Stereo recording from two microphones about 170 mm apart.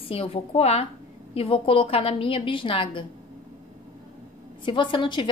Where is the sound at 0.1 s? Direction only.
35° left (ahead or behind).